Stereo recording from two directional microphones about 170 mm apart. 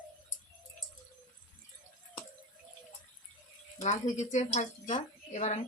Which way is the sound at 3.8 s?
45° left (ahead or behind).